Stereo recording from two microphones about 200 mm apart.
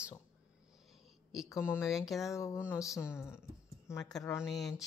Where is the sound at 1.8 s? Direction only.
Centre (ahead or behind).